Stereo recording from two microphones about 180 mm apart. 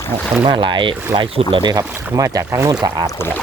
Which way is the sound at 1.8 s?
10° right (ahead or behind).